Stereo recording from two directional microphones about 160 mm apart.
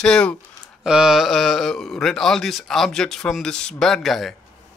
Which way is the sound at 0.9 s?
5° right (ahead or behind).